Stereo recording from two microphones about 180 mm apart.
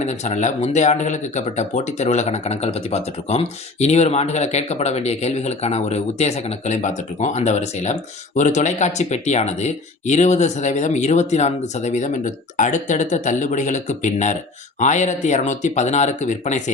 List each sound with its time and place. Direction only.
0.0 s speech: 40° left (ahead or behind)